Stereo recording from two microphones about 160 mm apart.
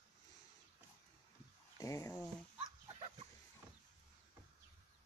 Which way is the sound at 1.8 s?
20° left (ahead or behind).